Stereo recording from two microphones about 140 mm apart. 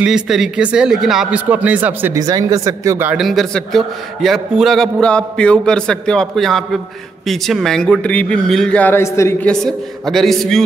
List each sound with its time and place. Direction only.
0.0 s speech: 5° right (ahead or behind)
2.1 s speech: 25° right (ahead or behind)
3.2 s a man's voice: centre (ahead or behind); by 9.5 s 20° left (ahead or behind)
9.5 s a man's voice: 5° left (ahead or behind)